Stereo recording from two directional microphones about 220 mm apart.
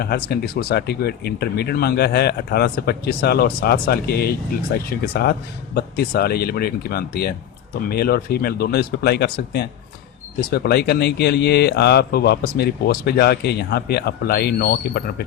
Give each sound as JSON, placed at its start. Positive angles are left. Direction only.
{"t": 0.0, "sound": "speech", "side_deg": 45}